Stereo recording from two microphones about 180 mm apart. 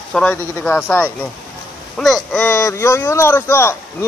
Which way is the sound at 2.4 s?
15° left (ahead or behind).